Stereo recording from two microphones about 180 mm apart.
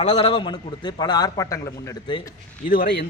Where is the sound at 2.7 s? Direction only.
55° left (ahead or behind).